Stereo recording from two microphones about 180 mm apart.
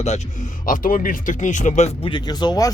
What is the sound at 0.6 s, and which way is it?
Speech, 50° left (ahead or behind).